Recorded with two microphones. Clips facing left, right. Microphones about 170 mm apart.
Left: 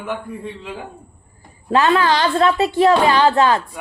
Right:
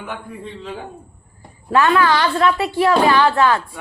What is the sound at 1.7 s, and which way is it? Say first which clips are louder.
A woman's voice: even; 20° left (ahead or behind).